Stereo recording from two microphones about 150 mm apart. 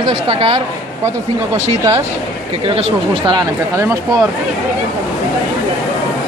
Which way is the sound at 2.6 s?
40° right (ahead or behind).